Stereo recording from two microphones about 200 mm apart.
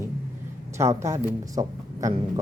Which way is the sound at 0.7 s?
15° right (ahead or behind).